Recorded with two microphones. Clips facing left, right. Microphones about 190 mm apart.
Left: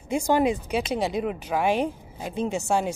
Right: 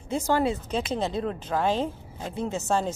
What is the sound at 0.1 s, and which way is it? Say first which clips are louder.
Speech: left 3 dB; 15° left (ahead or behind).